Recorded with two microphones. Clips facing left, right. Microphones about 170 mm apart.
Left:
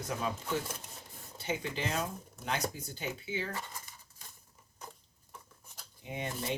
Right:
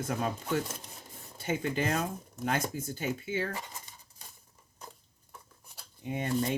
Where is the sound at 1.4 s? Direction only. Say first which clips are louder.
Right 5 dB; 50° right (ahead or behind).